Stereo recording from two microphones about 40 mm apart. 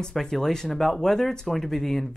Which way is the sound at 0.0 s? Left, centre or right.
Centre.